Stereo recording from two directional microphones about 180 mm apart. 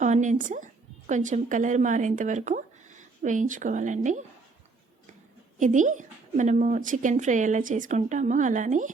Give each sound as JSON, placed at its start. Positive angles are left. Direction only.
{"t": 0.0, "sound": "a woman's voice", "side_deg": -45}
{"t": 5.5, "sound": "speech", "side_deg": -45}